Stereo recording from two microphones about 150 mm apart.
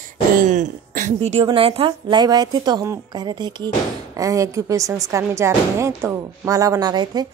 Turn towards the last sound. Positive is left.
turn(degrees=-25)  # may be behind; listen again after turning